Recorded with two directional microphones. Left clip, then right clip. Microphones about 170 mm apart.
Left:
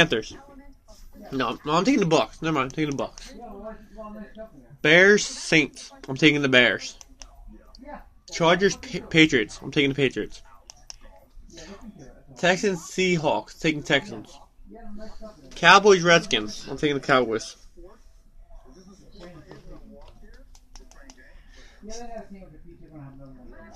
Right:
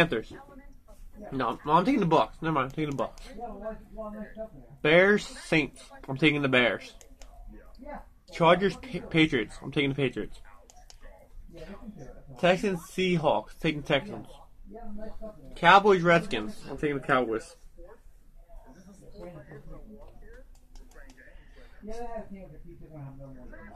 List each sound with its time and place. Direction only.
0.0 s speech: 20° left (ahead or behind)
4.8 s speech: 15° left (ahead or behind)
8.3 s speech: 5° left (ahead or behind)
12.4 s speech: 5° left (ahead or behind)
15.5 s speech: 20° left (ahead or behind)
16.8 s speech: 40° left (ahead or behind)